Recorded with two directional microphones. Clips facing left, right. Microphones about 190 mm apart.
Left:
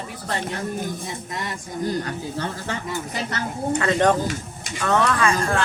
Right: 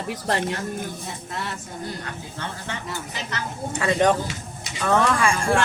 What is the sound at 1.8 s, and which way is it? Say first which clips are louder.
Speech: left 10 dB; 35° left (ahead or behind).